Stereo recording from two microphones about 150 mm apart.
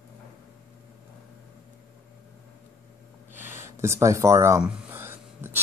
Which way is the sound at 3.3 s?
15° right (ahead or behind).